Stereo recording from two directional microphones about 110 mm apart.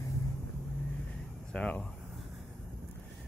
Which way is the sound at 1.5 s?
10° left (ahead or behind).